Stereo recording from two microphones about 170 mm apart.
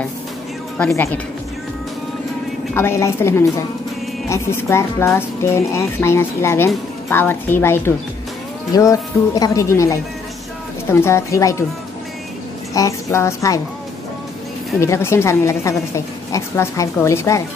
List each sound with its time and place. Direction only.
0.7 s a woman's voice: 15° left (ahead or behind)
2.7 s a woman's voice: 15° left (ahead or behind)
12.7 s speech: 20° left (ahead or behind)
14.8 s a woman's voice: 15° left (ahead or behind)